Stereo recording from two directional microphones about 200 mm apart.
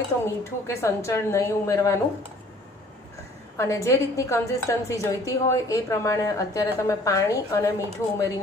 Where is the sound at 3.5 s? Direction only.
15° left (ahead or behind).